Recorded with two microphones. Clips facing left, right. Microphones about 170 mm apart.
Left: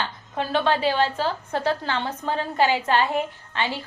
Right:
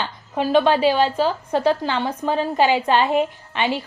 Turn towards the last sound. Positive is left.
turn(degrees=-15)  # may be behind; listen again after turning